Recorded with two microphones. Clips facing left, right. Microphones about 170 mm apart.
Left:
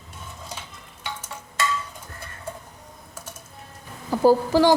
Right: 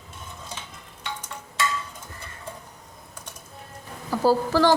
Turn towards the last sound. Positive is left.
turn(degrees=15)  # may be behind; listen again after turning